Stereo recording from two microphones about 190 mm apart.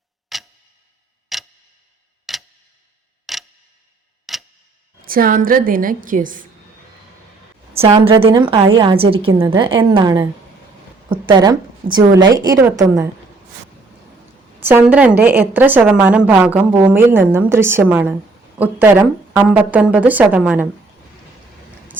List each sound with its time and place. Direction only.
0.3 s tick-tock: centre (ahead or behind)
1.3 s clock: centre (ahead or behind)
2.3 s tick: centre (ahead or behind)
3.3 s tick-tock: centre (ahead or behind)
5.0 s a woman's voice: 50° right (ahead or behind)
7.7 s a woman's voice: 30° right (ahead or behind); by 13.1 s 15° right (ahead or behind)
14.6 s a woman's voice: 10° right (ahead or behind)